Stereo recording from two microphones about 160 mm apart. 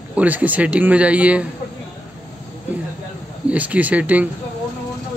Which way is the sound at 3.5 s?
10° right (ahead or behind).